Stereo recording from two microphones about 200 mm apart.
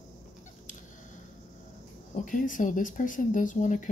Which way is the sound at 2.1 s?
40° left (ahead or behind).